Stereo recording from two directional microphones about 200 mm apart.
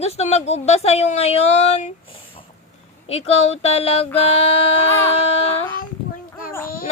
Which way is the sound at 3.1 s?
30° left (ahead or behind).